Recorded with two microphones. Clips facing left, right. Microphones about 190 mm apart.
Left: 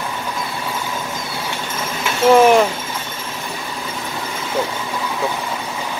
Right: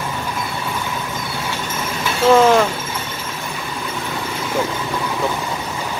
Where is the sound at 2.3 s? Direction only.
15° left (ahead or behind).